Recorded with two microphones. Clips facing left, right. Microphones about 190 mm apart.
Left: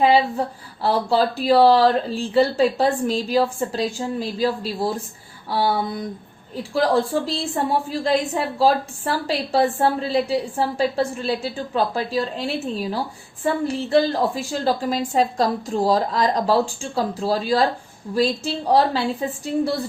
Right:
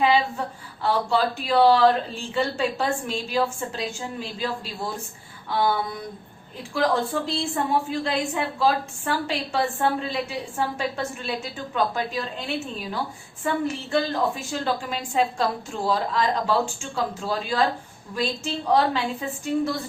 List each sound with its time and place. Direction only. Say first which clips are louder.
0.0 s a woman's voice: left 4 dB; 35° left (ahead or behind)
14.6 s a woman's voice: left 7 dB; 35° left (ahead or behind)